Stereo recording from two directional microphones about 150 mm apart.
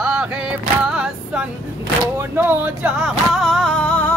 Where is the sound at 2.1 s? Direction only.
15° right (ahead or behind).